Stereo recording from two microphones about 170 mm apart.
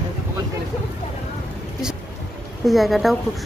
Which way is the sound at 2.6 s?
Centre (ahead or behind).